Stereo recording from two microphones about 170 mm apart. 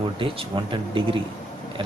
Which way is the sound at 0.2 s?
30° right (ahead or behind).